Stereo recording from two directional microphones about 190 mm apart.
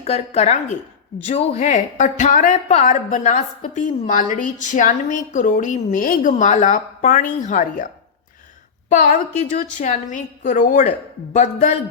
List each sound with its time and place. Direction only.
0.0 s a woman's voice: 35° left (ahead or behind)
8.9 s a woman's voice: 45° left (ahead or behind)